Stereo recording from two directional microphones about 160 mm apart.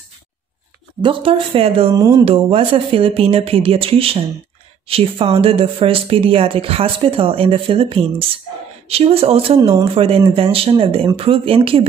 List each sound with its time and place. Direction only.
1.0 s speech: 35° right (ahead or behind)
2.0 s speech: 20° right (ahead or behind)
2.2 s speech: 35° right (ahead or behind)